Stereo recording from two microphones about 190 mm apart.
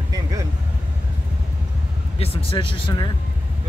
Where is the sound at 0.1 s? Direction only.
20° right (ahead or behind).